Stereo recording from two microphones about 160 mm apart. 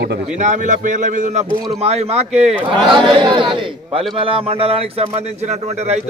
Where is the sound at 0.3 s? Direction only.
50° right (ahead or behind).